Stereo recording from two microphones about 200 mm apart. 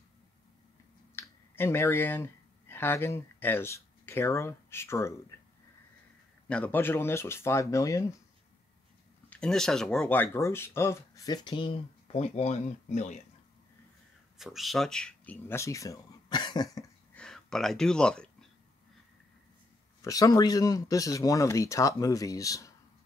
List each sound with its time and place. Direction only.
1.1 s speech: 10° left (ahead or behind)
6.4 s speech: 10° left (ahead or behind)
9.3 s speech: 5° left (ahead or behind); by 13.2 s 35° left (ahead or behind)
14.4 s speech: centre (ahead or behind); by 16.8 s 20° left (ahead or behind)
17.1 s gasp: 5° left (ahead or behind)
20.0 s speech: 15° left (ahead or behind)